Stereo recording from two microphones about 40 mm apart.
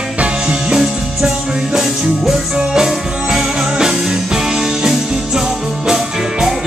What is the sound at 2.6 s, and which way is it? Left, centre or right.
Music, centre.